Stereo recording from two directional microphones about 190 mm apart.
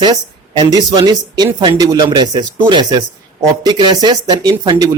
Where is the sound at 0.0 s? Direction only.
25° right (ahead or behind).